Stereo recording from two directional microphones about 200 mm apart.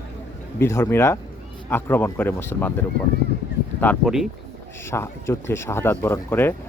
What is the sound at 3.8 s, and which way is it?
Speech, 5° left (ahead or behind).